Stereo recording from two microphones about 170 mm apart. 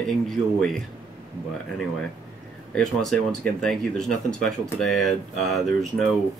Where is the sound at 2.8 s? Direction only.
5° left (ahead or behind).